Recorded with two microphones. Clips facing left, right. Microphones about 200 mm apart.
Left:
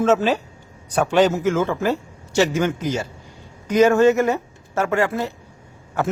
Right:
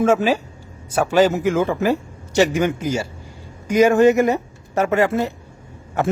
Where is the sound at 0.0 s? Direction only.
10° right (ahead or behind).